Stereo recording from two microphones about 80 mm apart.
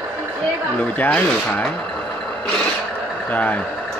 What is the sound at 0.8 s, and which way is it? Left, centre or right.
Speech, centre.